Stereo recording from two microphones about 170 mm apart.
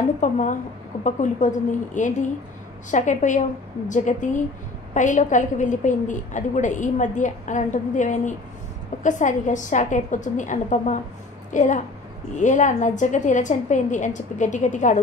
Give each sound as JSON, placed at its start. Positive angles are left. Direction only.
{"t": 0.2, "sound": "a woman's voice", "side_deg": 45}